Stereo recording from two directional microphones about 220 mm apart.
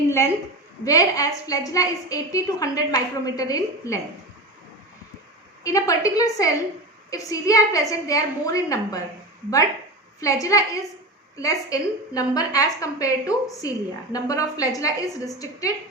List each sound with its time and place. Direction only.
0.9 s a woman's voice: 15° left (ahead or behind)
5.6 s a woman's voice: 15° left (ahead or behind)
10.2 s a woman's voice: 15° left (ahead or behind)